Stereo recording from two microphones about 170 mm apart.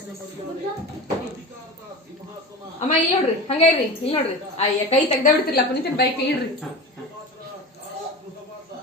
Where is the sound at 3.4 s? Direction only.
35° left (ahead or behind).